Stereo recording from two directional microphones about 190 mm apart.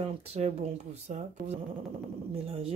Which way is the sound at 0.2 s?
30° right (ahead or behind).